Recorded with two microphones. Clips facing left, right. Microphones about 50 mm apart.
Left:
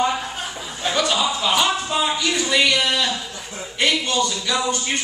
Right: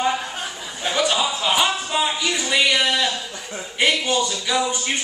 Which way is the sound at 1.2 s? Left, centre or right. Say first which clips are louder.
Left 1 dB; centre.